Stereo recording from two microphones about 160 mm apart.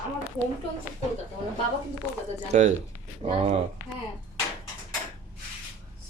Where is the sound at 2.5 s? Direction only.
50° right (ahead or behind).